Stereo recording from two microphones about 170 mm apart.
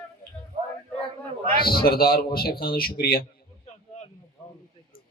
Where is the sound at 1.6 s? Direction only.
65° left (ahead or behind).